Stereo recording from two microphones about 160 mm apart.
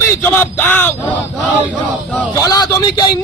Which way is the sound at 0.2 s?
10° left (ahead or behind).